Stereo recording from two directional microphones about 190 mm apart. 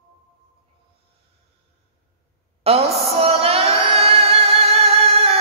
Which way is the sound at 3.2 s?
30° right (ahead or behind).